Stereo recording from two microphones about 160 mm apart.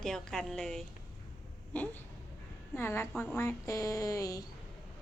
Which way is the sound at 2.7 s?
15° left (ahead or behind).